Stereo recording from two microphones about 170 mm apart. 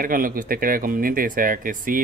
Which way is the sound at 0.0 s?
55° right (ahead or behind).